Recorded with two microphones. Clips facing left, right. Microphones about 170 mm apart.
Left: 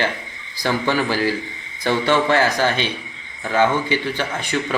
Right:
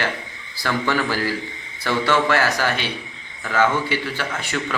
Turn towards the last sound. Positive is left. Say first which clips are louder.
# left 3 dB
turn(degrees=20)  # may be behind; listen again after turning